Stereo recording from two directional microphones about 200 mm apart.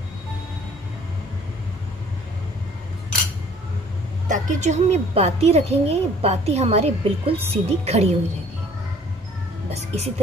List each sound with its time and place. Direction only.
4.3 s a woman's voice: 35° right (ahead or behind)
9.7 s a woman's voice: 30° right (ahead or behind)